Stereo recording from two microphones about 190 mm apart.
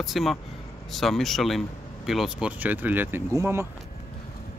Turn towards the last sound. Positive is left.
turn(degrees=-15)  # may be behind; listen again after turning